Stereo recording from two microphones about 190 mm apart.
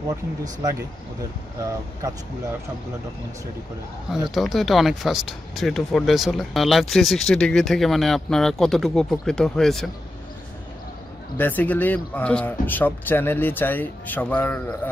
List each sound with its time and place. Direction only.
0.1 s speech: 20° right (ahead or behind)
4.3 s speech: centre (ahead or behind)
11.3 s speech: 10° left (ahead or behind)